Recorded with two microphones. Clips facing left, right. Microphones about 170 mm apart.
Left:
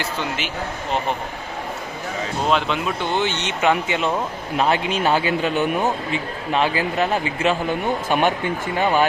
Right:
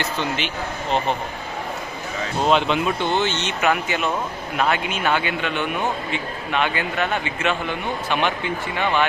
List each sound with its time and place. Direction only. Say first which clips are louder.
0.0 s speech: right 1 dB; 5° left (ahead or behind)
2.5 s speech: right 2 dB; centre (ahead or behind)
3.2 s speech: even; 15° left (ahead or behind); by 9.0 s 40° left (ahead or behind)